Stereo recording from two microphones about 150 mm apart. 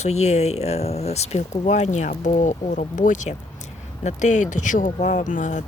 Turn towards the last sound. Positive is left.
turn(degrees=55)  # may be behind; listen again after turning